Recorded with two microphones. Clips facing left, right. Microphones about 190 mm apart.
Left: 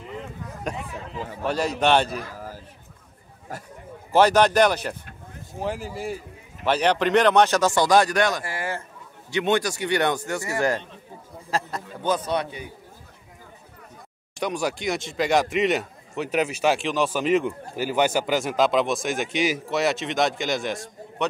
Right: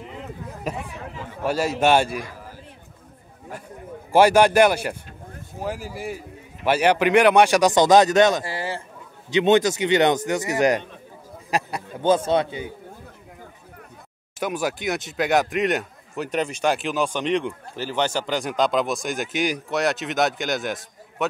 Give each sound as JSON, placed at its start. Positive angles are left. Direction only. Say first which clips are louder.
{"t": 0.7, "sound": "speech", "louder": "right 1 dB", "side_deg": -5}
{"t": 4.1, "sound": "a man's voice", "louder": "right 2 dB", "side_deg": -10}
{"t": 11.5, "sound": "a sound", "louder": "right 2 dB", "side_deg": -15}
{"t": 12.3, "sound": "a man's voice", "louder": "right 5 dB", "side_deg": -25}
{"t": 14.4, "sound": "speech", "louder": "right 1 dB", "side_deg": -5}